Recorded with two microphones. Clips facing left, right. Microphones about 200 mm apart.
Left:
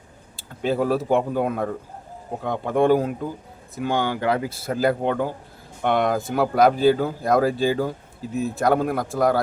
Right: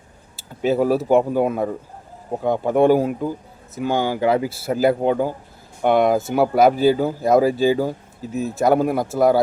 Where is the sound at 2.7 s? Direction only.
5° right (ahead or behind).